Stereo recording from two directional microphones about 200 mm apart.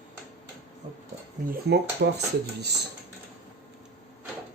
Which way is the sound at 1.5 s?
55° right (ahead or behind).